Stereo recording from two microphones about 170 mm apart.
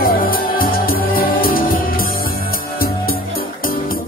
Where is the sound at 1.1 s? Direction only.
60° left (ahead or behind).